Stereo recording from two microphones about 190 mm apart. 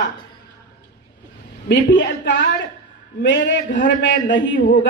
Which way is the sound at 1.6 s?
70° left (ahead or behind).